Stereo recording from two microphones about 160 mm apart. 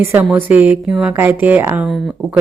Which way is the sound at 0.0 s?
15° right (ahead or behind).